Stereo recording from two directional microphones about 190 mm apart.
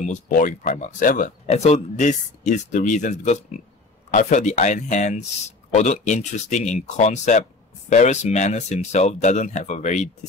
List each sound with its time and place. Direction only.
0.0 s speech: 40° left (ahead or behind)